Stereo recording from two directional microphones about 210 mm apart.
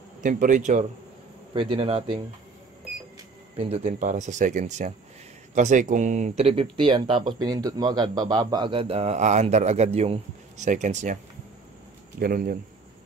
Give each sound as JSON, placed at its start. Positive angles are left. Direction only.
{"t": 0.2, "sound": "speech", "side_deg": -40}
{"t": 1.5, "sound": "speech", "side_deg": -25}
{"t": 3.5, "sound": "speech", "side_deg": -30}
{"t": 12.2, "sound": "speech", "side_deg": -45}